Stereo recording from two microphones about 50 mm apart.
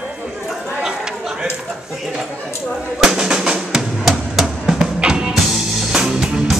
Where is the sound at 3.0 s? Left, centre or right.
Centre.